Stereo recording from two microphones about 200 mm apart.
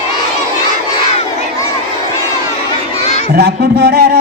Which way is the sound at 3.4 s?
50° right (ahead or behind).